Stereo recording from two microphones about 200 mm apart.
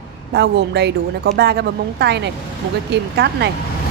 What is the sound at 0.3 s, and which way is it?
Speech, 60° right (ahead or behind).